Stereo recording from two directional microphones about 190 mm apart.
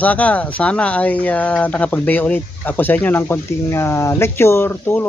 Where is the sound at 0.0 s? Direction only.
5° left (ahead or behind).